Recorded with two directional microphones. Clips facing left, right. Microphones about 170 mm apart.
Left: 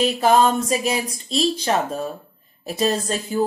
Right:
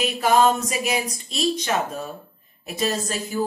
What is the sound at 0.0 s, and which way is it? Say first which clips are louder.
A woman's voice: left 2 dB; 30° left (ahead or behind).